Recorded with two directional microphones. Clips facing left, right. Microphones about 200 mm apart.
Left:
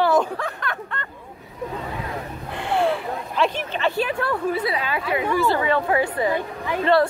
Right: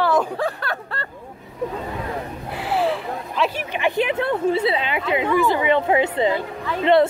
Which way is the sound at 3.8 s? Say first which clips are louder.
Right 3 dB; 15° right (ahead or behind).